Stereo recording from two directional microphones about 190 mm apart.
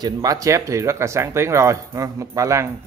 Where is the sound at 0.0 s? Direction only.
20° right (ahead or behind).